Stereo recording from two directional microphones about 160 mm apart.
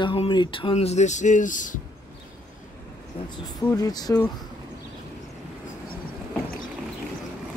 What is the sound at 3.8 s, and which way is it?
Speech, 25° left (ahead or behind).